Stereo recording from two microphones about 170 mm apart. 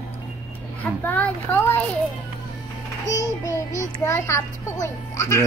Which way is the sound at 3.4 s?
20° left (ahead or behind).